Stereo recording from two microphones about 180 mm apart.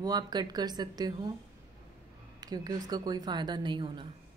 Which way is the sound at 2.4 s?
20° right (ahead or behind).